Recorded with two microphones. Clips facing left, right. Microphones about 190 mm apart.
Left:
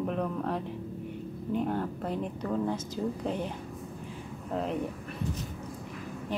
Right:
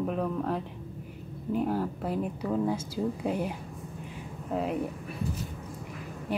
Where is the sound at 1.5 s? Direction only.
5° right (ahead or behind).